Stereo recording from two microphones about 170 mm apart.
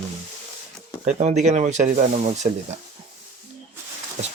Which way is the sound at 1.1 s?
45° right (ahead or behind).